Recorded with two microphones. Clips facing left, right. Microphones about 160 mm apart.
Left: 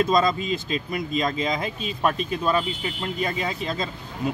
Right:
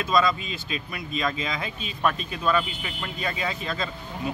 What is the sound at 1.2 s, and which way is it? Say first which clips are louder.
Speech: even; 40° left (ahead or behind).